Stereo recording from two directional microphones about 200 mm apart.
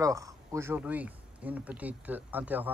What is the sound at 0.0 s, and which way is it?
Speech, 15° right (ahead or behind).